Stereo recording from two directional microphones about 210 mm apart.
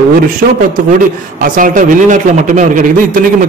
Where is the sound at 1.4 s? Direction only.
40° right (ahead or behind).